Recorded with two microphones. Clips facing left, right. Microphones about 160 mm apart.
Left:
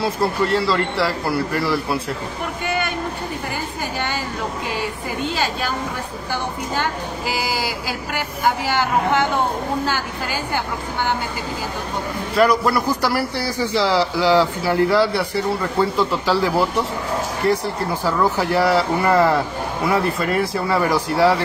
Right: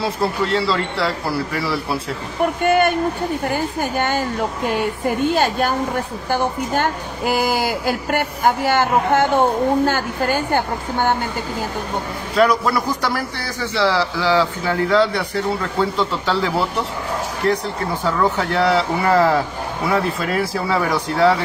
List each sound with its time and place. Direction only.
0.0 s a man's voice: centre (ahead or behind)
2.6 s a sound: 50° right (ahead or behind)
3.5 s a woman's voice: 50° right (ahead or behind)
12.4 s a man's voice: centre (ahead or behind)